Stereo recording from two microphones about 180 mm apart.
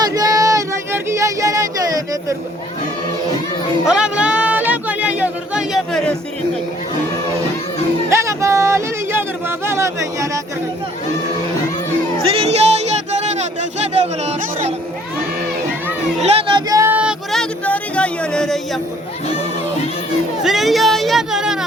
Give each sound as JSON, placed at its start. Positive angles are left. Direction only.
{"t": 0.0, "sound": "a sound", "side_deg": -20}
{"t": 3.8, "sound": "a sound", "side_deg": -5}
{"t": 8.1, "sound": "music", "side_deg": -15}
{"t": 9.6, "sound": "speech", "side_deg": -15}
{"t": 12.2, "sound": "music", "side_deg": -35}
{"t": 16.2, "sound": "speech", "side_deg": -25}
{"t": 17.7, "sound": "speech", "side_deg": 5}
{"t": 20.4, "sound": "speech", "side_deg": 0}